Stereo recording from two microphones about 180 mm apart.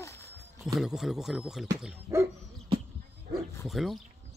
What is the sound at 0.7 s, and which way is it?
Speech, centre (ahead or behind).